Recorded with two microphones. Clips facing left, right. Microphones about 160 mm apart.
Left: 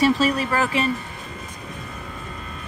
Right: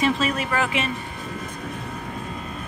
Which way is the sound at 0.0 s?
35° left (ahead or behind).